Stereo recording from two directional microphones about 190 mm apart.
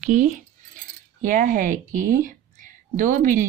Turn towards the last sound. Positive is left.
turn(degrees=-45)  # may be behind; listen again after turning